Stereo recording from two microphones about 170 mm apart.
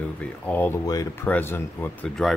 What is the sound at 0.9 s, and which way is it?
Speech, 20° left (ahead or behind).